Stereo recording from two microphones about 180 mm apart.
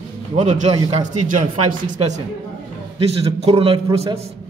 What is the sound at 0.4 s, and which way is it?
A man's voice, 40° right (ahead or behind).